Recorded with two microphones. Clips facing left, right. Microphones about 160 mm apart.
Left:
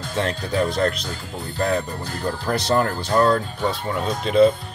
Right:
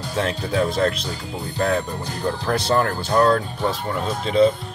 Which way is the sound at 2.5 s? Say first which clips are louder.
Even; centre (ahead or behind).